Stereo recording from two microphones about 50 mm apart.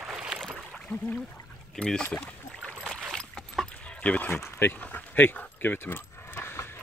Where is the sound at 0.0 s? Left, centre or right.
Centre.